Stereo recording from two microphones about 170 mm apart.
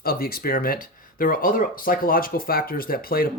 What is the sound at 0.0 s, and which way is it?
Speech, 60° left (ahead or behind).